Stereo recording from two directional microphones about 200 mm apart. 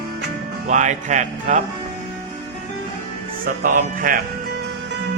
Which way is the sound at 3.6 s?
45° right (ahead or behind).